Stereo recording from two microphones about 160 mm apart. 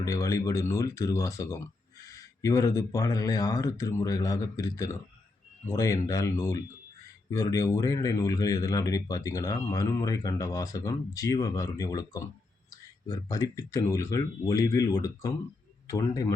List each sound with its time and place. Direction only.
0.0 s speech: 20° left (ahead or behind)